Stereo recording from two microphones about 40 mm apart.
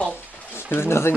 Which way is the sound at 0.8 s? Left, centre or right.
Left.